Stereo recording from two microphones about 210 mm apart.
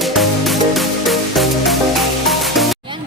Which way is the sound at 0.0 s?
Centre (ahead or behind).